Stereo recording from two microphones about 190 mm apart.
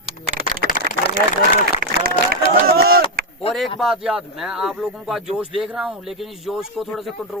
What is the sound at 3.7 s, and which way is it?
Speech, centre (ahead or behind).